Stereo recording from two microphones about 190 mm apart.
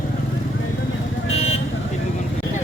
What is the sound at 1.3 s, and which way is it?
Vehicle, 30° left (ahead or behind).